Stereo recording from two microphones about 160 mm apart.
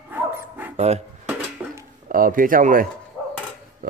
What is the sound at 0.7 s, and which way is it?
Speech, 40° right (ahead or behind).